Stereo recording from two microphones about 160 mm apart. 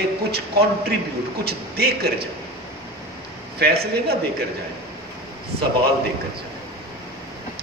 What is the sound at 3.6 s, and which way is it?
Speech, 80° right.